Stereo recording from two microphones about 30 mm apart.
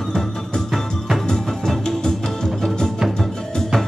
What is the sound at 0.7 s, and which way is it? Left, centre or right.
Music, centre.